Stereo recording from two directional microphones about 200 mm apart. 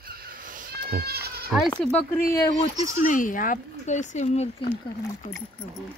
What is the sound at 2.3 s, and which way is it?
Speech, 20° left (ahead or behind).